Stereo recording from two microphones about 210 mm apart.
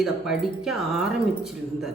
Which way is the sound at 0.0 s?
Centre (ahead or behind).